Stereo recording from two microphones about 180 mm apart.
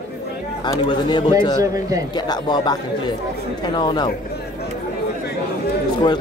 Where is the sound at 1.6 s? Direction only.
20° right (ahead or behind).